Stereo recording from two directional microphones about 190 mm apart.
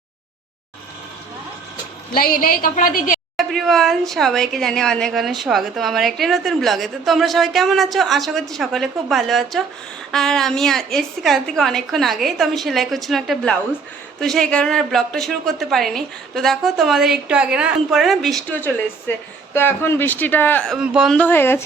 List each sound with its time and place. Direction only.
2.1 s a woman's voice: 50° left (ahead or behind)
3.3 s speech: centre (ahead or behind)
20.7 s speech: 5° right (ahead or behind); by 21.6 s 10° left (ahead or behind)